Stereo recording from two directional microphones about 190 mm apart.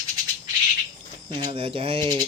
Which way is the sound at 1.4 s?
30° right (ahead or behind).